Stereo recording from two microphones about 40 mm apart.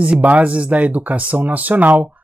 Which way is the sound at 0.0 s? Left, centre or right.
Right.